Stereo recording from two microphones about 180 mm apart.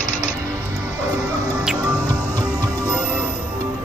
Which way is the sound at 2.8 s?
5° right (ahead or behind).